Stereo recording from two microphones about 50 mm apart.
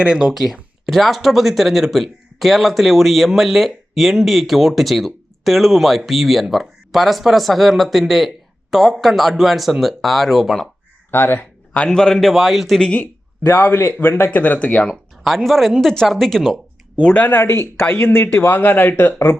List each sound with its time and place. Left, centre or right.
0.0 s speech: centre
0.9 s speech: centre
11.1 s a man's voice: left
11.9 s speech: centre
13.4 s a man's voice: left
14.3 s speech: left
15.2 s speech: centre
17.0 s speech: left
17.2 s a man's voice: left